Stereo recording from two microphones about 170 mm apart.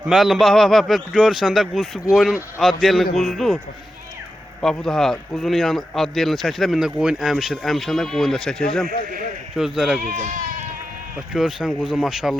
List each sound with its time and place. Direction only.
0.0 s speech: 5° right (ahead or behind)
4.6 s speech: 5° left (ahead or behind)
10.2 s speech: 50° right (ahead or behind)
11.3 s speech: 5° right (ahead or behind)